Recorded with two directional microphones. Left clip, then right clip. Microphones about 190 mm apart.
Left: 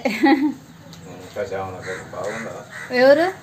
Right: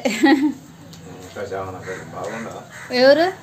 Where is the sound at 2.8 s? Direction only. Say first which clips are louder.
Even; centre (ahead or behind).